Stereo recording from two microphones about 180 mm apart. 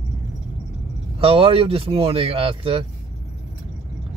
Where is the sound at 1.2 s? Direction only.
30° right (ahead or behind).